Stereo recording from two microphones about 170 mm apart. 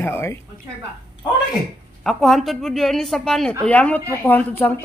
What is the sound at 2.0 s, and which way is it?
Speech, centre (ahead or behind).